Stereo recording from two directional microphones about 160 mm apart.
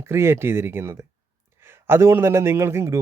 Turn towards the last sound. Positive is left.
turn(degrees=-15)  # may be behind; listen again after turning